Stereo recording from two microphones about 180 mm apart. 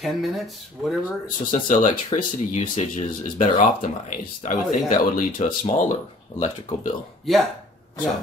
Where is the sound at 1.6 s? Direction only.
45° left (ahead or behind).